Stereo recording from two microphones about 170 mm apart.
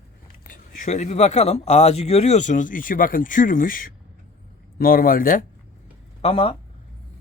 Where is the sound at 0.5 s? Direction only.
45° left (ahead or behind).